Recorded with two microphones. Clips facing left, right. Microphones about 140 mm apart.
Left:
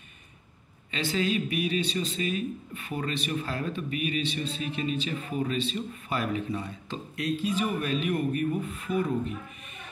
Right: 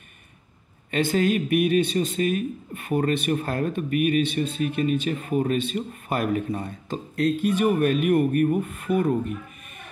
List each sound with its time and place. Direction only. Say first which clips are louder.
0.9 s a man's voice: right 6 dB; 50° right (ahead or behind)